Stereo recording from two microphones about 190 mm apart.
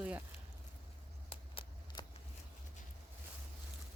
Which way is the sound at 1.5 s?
30° left (ahead or behind).